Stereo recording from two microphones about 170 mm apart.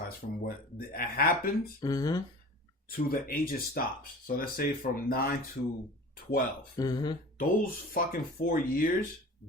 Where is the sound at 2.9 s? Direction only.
60° left (ahead or behind).